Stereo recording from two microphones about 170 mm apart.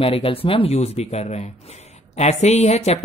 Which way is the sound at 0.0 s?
35° left (ahead or behind).